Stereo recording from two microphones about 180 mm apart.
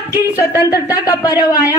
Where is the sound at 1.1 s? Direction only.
20° left (ahead or behind).